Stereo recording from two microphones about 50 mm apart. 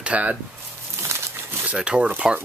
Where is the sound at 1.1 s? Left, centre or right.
Right.